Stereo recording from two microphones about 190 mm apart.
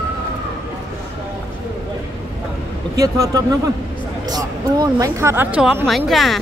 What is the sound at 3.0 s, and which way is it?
Speech, 20° right (ahead or behind).